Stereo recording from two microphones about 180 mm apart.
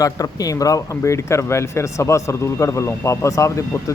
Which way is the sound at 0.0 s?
20° left (ahead or behind).